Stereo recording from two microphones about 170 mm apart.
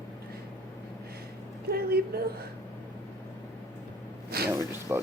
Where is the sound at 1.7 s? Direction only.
65° right (ahead or behind).